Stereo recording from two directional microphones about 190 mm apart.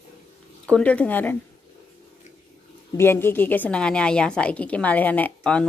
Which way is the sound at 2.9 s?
10° left (ahead or behind).